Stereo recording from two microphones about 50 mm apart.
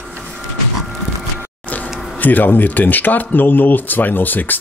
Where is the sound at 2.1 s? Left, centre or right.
Left.